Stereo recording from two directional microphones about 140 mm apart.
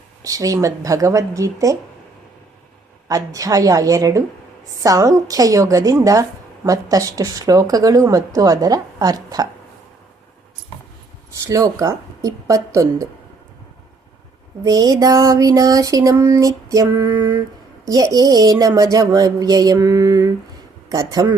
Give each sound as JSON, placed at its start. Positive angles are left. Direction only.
{"t": 0.2, "sound": "a woman's voice", "side_deg": -25}
{"t": 3.1, "sound": "a woman's voice", "side_deg": -25}
{"t": 11.4, "sound": "a woman's voice", "side_deg": -25}
{"t": 14.6, "sound": "a woman's voice", "side_deg": -25}